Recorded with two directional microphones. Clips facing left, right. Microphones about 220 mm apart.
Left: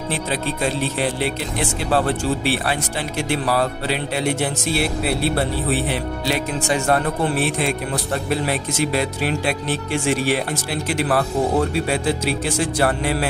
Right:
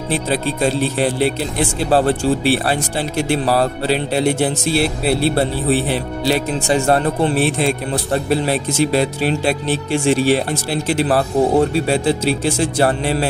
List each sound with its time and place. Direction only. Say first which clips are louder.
1.9 s speech: right 5 dB; 30° right (ahead or behind)